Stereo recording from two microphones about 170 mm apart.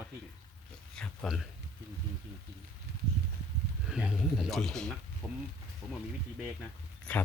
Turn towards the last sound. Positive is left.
turn(degrees=5)  # may be behind; listen again after turning